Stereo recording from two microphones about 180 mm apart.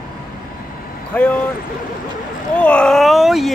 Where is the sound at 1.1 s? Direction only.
10° left (ahead or behind).